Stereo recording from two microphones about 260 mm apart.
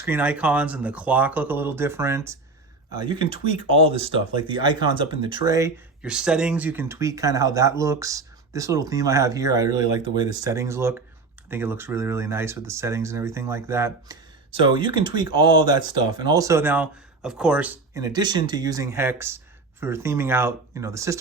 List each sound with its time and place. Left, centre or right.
0.0 s speech: centre